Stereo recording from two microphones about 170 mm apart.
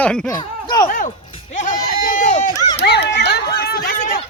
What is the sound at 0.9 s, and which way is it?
Speech, 55° left (ahead or behind).